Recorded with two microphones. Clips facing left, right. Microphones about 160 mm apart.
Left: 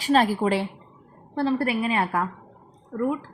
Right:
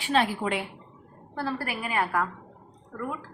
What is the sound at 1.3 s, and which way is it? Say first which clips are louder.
A woman's voice: left 8 dB; 20° left (ahead or behind).